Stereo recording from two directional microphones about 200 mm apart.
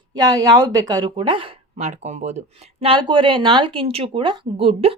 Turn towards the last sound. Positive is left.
turn(degrees=-30)  # may be behind; listen again after turning